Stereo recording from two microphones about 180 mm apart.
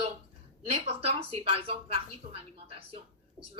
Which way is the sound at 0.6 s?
30° right (ahead or behind).